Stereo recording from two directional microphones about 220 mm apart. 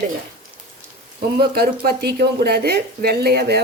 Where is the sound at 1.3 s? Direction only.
45° right (ahead or behind).